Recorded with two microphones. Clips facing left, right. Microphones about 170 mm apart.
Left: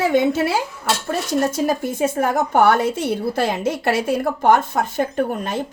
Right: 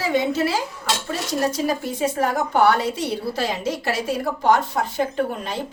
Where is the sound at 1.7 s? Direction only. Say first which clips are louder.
Left 3 dB; 50° left (ahead or behind).